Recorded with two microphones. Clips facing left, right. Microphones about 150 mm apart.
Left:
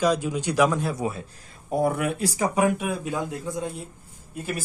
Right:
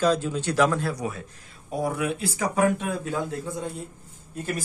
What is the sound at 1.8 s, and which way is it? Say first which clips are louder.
Speech: left 3 dB; 55° left (ahead or behind).